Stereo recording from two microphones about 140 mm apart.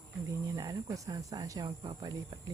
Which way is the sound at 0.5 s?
25° right (ahead or behind).